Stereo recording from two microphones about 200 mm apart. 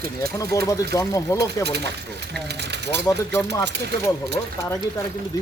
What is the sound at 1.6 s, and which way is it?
Speech, 55° right (ahead or behind).